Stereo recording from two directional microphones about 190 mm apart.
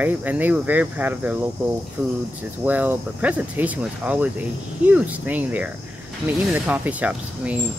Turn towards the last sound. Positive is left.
turn(degrees=-5)  # may be behind; listen again after turning